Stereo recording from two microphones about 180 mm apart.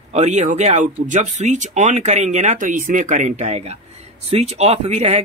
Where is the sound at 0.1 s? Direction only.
40° right (ahead or behind).